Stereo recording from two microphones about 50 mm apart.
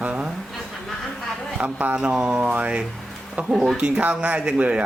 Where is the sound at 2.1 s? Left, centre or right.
Centre.